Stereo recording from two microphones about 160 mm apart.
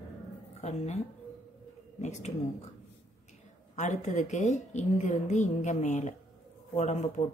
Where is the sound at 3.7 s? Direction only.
50° left (ahead or behind).